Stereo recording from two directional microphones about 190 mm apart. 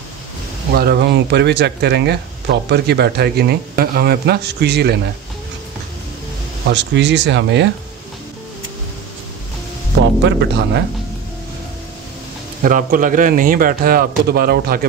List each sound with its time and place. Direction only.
0.7 s speech: 55° right (ahead or behind)
6.7 s speech: 70° right (ahead or behind)
10.2 s speech: 60° right (ahead or behind)
12.6 s a man's voice: 45° right (ahead or behind)